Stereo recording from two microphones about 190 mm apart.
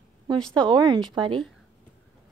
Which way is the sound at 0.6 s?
25° right (ahead or behind).